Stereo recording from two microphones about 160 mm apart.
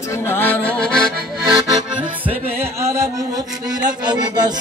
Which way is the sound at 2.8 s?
15° right (ahead or behind).